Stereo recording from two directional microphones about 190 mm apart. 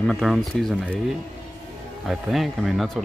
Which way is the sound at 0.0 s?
Centre (ahead or behind).